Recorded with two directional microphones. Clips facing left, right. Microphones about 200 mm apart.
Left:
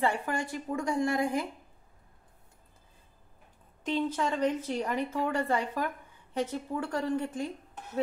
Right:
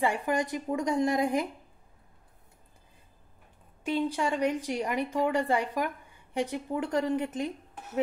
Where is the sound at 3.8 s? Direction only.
10° right (ahead or behind).